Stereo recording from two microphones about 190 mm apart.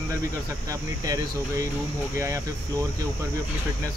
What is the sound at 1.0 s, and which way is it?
Speech, 20° right (ahead or behind).